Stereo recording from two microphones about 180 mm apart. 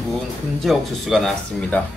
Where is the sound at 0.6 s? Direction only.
Centre (ahead or behind).